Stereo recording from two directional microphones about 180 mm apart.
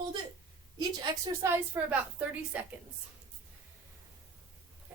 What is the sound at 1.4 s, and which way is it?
A woman's voice, 10° right (ahead or behind).